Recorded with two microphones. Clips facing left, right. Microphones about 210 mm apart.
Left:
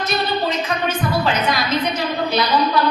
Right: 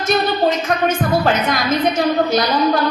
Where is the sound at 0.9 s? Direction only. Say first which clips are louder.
Right 4 dB; 50° right (ahead or behind).